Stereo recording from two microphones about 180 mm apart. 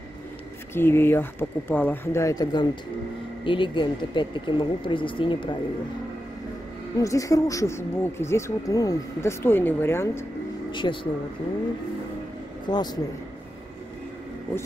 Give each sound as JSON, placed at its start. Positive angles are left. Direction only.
{"t": 0.7, "sound": "speech", "side_deg": 15}
{"t": 7.0, "sound": "speech", "side_deg": 20}
{"t": 10.7, "sound": "speech", "side_deg": 25}
{"t": 12.6, "sound": "speech", "side_deg": 25}